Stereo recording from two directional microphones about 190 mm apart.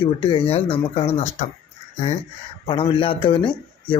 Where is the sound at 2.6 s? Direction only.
30° left (ahead or behind).